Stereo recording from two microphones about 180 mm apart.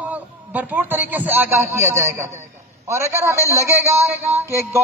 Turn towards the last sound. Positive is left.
turn(degrees=-15)  # may be behind; listen again after turning